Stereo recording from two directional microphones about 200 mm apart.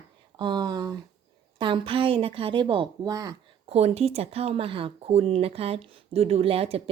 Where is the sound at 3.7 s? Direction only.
30° right (ahead or behind).